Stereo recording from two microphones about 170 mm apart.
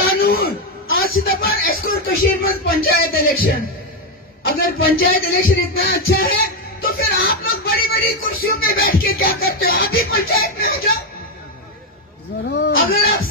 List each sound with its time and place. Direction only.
0.0 s music: 60° left (ahead or behind)
2.4 s speech: 60° left (ahead or behind)
4.6 s speech: 60° left (ahead or behind)
12.4 s speech: 80° left; by 13.0 s 65° left (ahead or behind)